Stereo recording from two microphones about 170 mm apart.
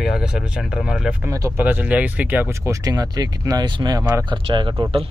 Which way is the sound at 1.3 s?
20° right (ahead or behind).